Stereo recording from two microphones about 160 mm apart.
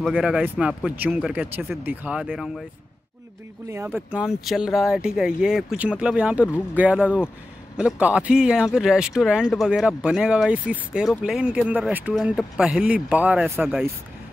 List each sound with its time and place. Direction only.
0.0 s speech: centre (ahead or behind)
3.7 s speech: 15° right (ahead or behind)